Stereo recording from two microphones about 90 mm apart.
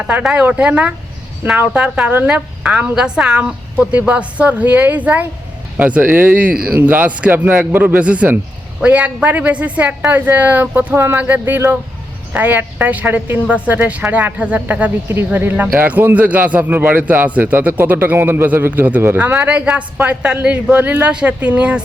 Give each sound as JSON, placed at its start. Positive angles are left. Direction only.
{"t": 0.0, "sound": "a woman's voice", "side_deg": -15}